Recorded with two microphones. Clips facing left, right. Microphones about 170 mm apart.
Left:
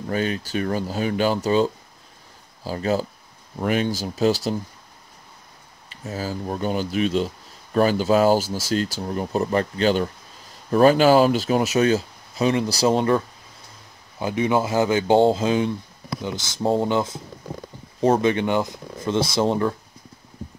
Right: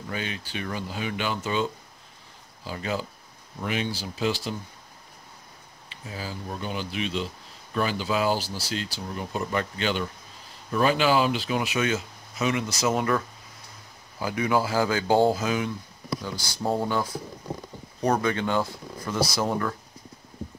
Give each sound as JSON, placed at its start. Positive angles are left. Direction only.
{"t": 0.0, "sound": "speech", "side_deg": 40}
{"t": 5.9, "sound": "speech", "side_deg": 45}